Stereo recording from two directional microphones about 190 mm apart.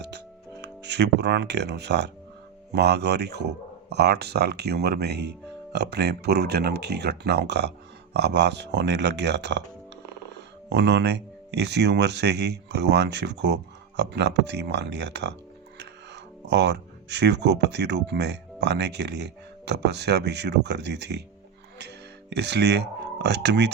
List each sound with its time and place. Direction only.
0.6 s speech: 65° right (ahead or behind)